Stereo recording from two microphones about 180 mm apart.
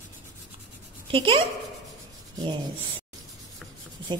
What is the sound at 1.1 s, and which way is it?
Speech, 30° right (ahead or behind).